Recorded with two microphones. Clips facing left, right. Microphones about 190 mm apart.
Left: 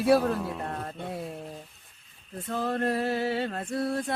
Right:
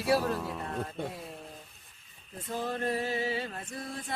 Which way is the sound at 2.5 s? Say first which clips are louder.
Left 4 dB; 65° left (ahead or behind).